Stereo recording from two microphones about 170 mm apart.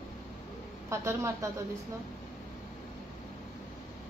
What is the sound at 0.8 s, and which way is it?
Speech, 15° right (ahead or behind).